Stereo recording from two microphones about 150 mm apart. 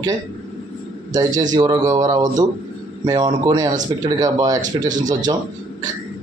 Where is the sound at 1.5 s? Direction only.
25° right (ahead or behind).